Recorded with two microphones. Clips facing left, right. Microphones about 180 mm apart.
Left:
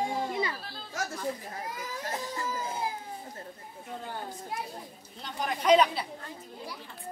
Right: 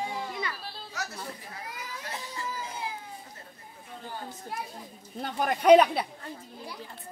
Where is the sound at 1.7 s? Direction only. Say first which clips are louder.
Left 4 dB; 45° left (ahead or behind).